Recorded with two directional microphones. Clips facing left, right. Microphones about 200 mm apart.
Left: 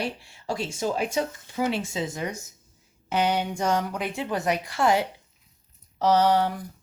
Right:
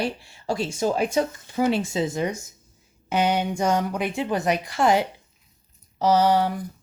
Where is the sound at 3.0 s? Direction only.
15° right (ahead or behind).